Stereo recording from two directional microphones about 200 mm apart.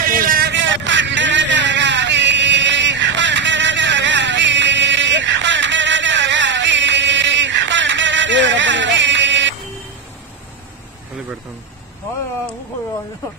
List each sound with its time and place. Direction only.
0.0 s vehicle: 45° right (ahead or behind); by 9.6 s 65° right (ahead or behind)